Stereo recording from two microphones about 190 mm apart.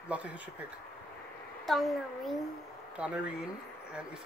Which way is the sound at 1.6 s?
Centre (ahead or behind).